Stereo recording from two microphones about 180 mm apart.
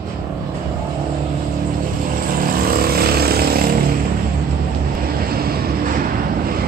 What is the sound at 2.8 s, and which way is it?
Vehicle, 60° right (ahead or behind).